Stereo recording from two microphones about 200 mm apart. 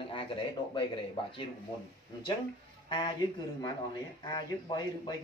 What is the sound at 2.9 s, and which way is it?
Speech, 25° left (ahead or behind).